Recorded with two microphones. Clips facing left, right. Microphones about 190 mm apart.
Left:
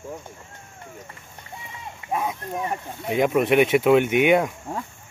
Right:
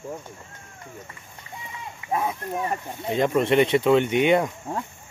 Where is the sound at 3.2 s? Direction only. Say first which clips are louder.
Left 1 dB; 5° left (ahead or behind).